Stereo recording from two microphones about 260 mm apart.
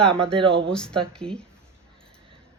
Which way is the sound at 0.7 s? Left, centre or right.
Centre.